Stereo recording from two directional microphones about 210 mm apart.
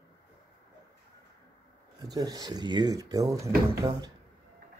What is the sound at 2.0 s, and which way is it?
Speech, 20° right (ahead or behind).